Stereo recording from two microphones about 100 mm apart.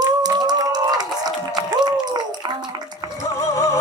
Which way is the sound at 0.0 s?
40° right (ahead or behind).